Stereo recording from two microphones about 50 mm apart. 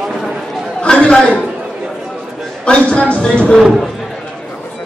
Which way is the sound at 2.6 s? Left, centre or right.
Left.